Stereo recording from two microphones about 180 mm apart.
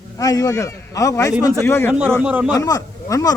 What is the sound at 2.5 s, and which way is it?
Speech, 20° left (ahead or behind).